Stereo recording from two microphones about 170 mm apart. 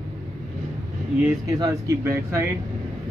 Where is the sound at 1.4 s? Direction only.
20° right (ahead or behind).